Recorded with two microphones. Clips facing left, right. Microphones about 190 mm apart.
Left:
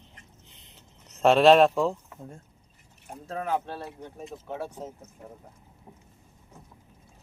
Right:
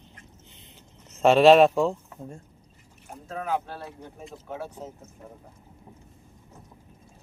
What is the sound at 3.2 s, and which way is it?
Speech, 30° left (ahead or behind).